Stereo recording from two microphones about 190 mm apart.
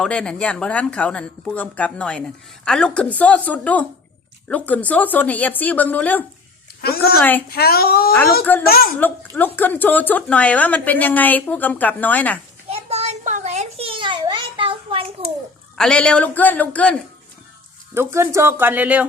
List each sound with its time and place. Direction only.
0.0 s a woman's voice: 5° left (ahead or behind)
6.8 s a woman's voice: 55° left (ahead or behind)
7.2 s a woman's voice: 10° left (ahead or behind)
7.5 s speech: 55° left (ahead or behind)
9.6 s a woman's voice: 10° left (ahead or behind)
12.6 s a sound: 35° right (ahead or behind)
15.7 s a woman's voice: 5° left (ahead or behind)
17.9 s speech: 15° right (ahead or behind)